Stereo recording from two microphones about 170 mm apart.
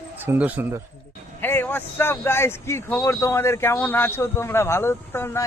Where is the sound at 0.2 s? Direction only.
10° right (ahead or behind).